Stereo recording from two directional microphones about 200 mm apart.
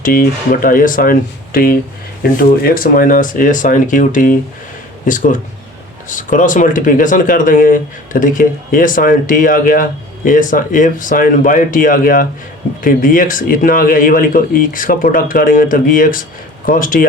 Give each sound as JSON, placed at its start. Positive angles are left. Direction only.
{"t": 0.0, "sound": "speech", "side_deg": 45}